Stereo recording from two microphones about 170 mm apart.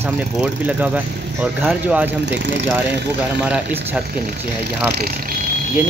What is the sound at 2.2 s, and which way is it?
Speech, 90° right.